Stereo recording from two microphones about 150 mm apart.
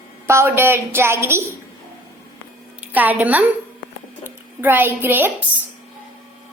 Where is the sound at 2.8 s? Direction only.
10° right (ahead or behind).